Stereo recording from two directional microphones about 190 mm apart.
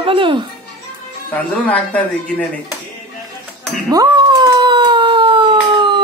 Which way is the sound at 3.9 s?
20° right (ahead or behind).